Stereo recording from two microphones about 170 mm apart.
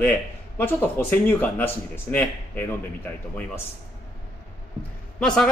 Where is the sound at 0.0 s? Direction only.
10° left (ahead or behind).